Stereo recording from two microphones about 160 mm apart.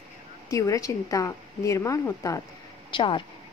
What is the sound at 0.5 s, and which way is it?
Speech, 20° left (ahead or behind).